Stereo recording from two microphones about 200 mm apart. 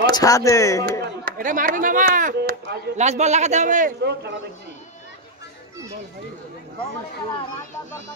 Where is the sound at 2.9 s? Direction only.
35° right (ahead or behind).